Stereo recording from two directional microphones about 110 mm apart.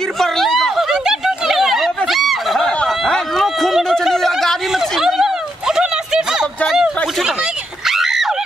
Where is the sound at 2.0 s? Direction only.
Centre (ahead or behind).